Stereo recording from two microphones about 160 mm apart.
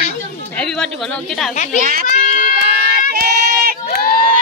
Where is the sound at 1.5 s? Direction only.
50° left (ahead or behind).